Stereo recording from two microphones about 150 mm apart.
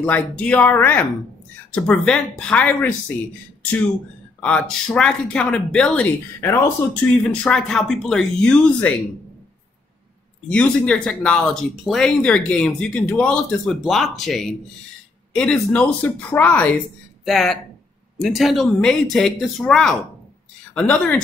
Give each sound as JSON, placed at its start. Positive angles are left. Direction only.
{"t": 0.0, "sound": "speech", "side_deg": 10}
{"t": 4.4, "sound": "speech", "side_deg": 10}
{"t": 7.1, "sound": "speech", "side_deg": 5}
{"t": 10.5, "sound": "speech", "side_deg": 5}